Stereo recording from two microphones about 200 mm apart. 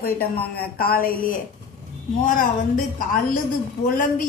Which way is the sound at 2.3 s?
45° left (ahead or behind).